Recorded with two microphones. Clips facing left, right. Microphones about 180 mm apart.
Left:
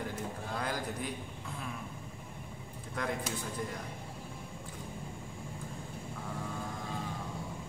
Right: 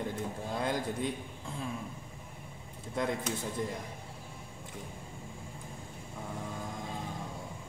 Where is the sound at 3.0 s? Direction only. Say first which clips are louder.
Right 4 dB; 25° right (ahead or behind).